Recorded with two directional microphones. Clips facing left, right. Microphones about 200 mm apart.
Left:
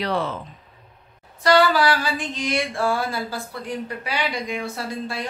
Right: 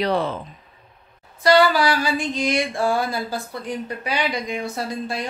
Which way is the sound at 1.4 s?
10° right (ahead or behind).